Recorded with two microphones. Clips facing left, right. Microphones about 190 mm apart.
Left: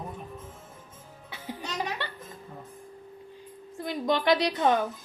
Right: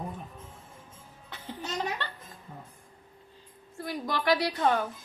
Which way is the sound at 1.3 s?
10° left (ahead or behind).